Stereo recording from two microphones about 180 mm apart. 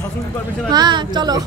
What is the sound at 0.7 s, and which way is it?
Speech, 25° right (ahead or behind).